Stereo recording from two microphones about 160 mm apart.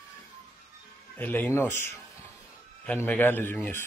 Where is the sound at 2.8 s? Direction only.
10° left (ahead or behind).